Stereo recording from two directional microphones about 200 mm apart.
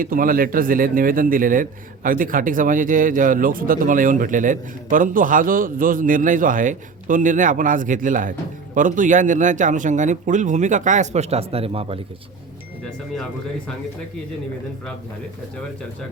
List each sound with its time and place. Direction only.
0.0 s speech: 45° right (ahead or behind); by 11.9 s 30° right (ahead or behind)